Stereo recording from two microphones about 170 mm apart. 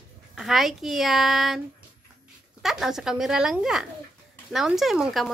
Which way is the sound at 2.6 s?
Centre (ahead or behind).